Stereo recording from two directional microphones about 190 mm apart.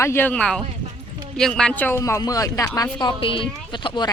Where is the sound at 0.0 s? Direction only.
10° left (ahead or behind).